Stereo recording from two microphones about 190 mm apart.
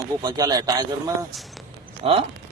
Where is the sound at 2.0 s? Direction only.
30° right (ahead or behind).